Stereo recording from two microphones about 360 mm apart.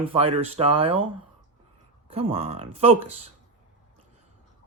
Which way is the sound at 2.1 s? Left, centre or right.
Centre.